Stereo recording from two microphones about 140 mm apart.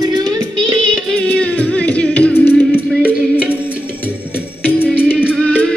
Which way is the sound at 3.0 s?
10° right (ahead or behind).